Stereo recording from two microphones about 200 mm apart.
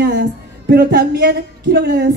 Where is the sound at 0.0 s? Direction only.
55° right (ahead or behind).